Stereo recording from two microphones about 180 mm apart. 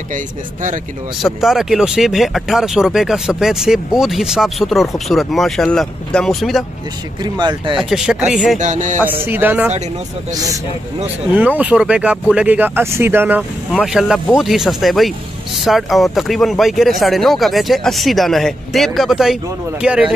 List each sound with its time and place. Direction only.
0.1 s speech: 45° right (ahead or behind)
1.2 s speech: centre (ahead or behind)
7.3 s speech: 25° right (ahead or behind)
7.7 s speech: 5° right (ahead or behind)
8.5 s speech: 45° right (ahead or behind)
9.0 s speech: 10° right (ahead or behind)